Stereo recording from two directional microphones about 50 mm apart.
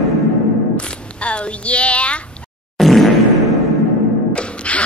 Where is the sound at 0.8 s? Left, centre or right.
Left.